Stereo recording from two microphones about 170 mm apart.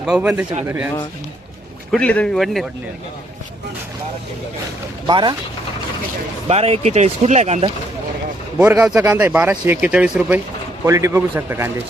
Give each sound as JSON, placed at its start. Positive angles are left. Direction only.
{"t": 0.0, "sound": "speech", "side_deg": -5}
{"t": 1.9, "sound": "speech", "side_deg": 5}
{"t": 5.0, "sound": "speech", "side_deg": -25}
{"t": 6.5, "sound": "speech", "side_deg": -40}
{"t": 8.5, "sound": "speech", "side_deg": -15}